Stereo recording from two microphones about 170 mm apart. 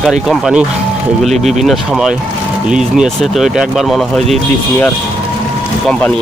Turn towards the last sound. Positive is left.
turn(degrees=0)  # may be behind; listen again after turning